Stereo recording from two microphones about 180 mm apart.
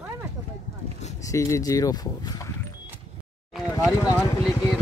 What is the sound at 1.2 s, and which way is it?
Speech, 15° left (ahead or behind).